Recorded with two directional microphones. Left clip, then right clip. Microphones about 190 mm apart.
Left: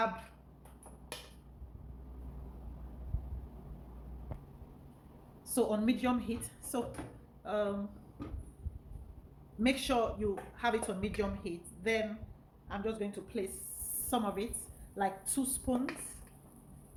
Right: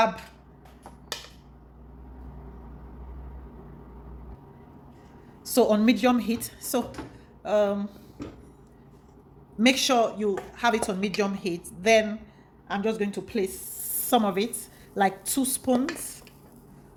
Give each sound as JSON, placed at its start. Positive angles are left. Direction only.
{"t": 5.4, "sound": "a woman's voice", "side_deg": -45}
{"t": 9.6, "sound": "a woman's voice", "side_deg": -45}